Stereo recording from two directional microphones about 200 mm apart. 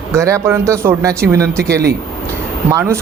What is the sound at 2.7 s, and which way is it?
Speech, 15° right (ahead or behind).